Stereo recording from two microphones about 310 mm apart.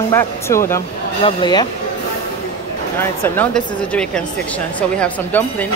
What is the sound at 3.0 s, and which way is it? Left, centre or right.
Speech, centre.